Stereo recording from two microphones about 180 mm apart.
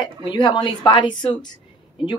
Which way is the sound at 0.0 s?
25° left (ahead or behind).